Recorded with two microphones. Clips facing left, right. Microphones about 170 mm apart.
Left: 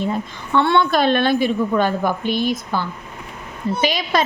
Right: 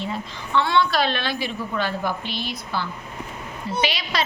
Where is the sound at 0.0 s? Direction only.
50° left (ahead or behind).